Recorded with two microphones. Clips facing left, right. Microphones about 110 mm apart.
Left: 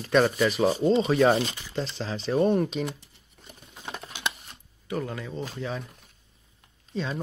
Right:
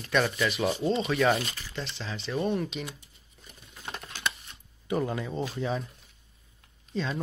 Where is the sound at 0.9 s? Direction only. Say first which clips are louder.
Left 4 dB; 25° left (ahead or behind).